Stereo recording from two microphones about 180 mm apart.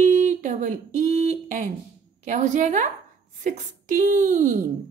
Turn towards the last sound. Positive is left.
turn(degrees=-45)  # may be behind; listen again after turning